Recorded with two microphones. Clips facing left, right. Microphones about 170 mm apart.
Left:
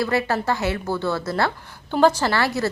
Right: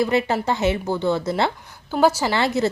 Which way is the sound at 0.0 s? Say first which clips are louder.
Right 2 dB; 20° right (ahead or behind).